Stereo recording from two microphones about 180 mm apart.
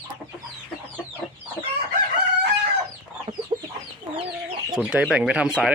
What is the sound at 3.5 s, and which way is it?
Chicken, 30° right (ahead or behind).